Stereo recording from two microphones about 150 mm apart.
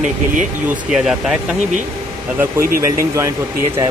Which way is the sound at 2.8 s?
20° right (ahead or behind).